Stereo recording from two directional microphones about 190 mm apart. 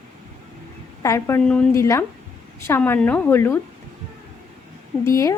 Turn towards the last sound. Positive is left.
turn(degrees=15)  # may be behind; listen again after turning